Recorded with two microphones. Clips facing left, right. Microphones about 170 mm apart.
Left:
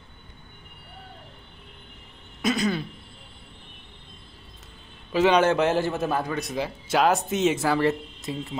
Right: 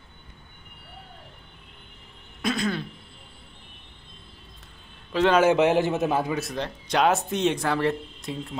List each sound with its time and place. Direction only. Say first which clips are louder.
2.4 s a sound: left 2 dB; centre (ahead or behind)
5.1 s speech: left 1 dB; 5° left (ahead or behind)
5.4 s a man's voice: right 2 dB; 15° right (ahead or behind)
6.3 s speech: left 1 dB; 5° left (ahead or behind)